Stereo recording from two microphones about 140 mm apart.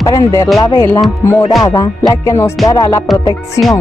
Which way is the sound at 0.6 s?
25° left (ahead or behind).